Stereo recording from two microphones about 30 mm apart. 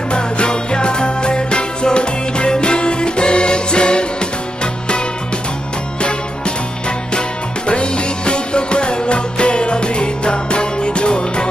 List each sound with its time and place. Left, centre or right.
0.1 s music: left
7.2 s music: left